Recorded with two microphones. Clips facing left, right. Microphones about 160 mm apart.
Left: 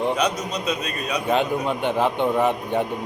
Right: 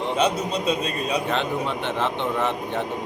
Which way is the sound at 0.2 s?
30° right (ahead or behind).